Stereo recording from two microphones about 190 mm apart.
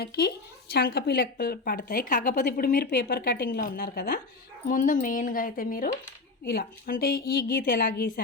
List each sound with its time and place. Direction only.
0.0 s speech: 55° left (ahead or behind)